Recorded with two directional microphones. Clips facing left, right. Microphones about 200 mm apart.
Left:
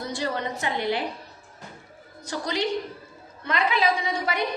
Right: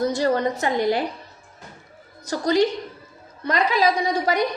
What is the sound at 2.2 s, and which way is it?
A woman's voice, 40° right (ahead or behind).